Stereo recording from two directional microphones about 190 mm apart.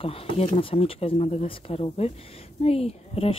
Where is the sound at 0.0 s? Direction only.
30° left (ahead or behind).